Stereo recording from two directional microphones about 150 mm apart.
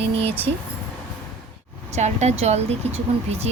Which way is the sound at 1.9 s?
50° right (ahead or behind).